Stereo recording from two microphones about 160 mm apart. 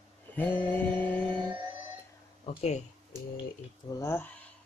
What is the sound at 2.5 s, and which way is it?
Speech, 40° left (ahead or behind).